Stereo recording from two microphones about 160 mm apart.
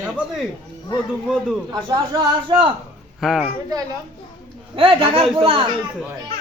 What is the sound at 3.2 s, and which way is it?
Speech, centre (ahead or behind).